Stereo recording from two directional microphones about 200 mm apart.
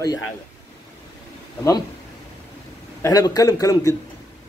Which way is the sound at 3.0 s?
15° left (ahead or behind).